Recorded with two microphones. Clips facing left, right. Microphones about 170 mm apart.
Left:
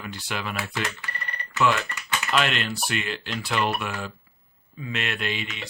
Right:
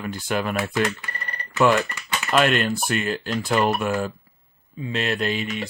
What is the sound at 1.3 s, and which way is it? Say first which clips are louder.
Typing: right 5 dB; 40° right (ahead or behind).